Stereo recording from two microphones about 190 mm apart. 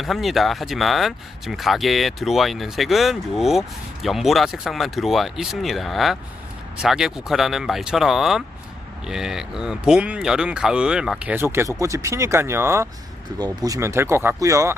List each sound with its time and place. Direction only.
0.0 s speech: centre (ahead or behind); by 14.8 s 15° right (ahead or behind)